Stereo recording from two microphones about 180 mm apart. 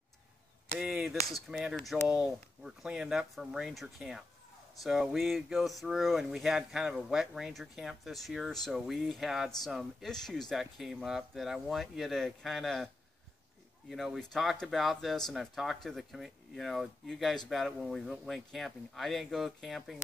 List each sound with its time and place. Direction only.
0.7 s speech: centre (ahead or behind)